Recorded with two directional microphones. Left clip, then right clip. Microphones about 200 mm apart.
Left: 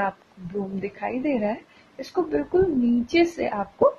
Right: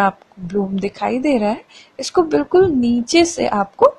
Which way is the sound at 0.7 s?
30° right (ahead or behind).